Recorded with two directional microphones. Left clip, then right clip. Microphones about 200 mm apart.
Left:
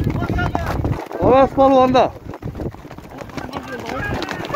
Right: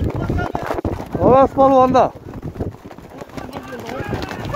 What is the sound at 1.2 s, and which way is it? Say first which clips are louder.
Speech: right 1 dB; 10° right (ahead or behind).